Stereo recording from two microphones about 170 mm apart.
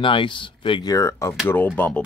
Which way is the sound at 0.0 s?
30° left (ahead or behind).